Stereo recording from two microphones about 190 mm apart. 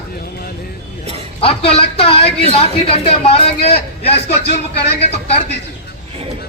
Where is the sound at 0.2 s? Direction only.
55° left (ahead or behind).